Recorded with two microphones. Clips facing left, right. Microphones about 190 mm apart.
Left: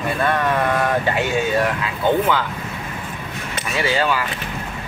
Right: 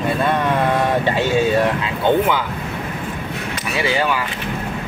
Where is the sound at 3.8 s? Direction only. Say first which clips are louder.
Even; 15° right (ahead or behind).